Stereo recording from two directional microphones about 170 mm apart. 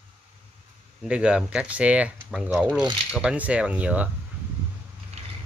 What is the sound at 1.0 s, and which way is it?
Speech, 5° right (ahead or behind).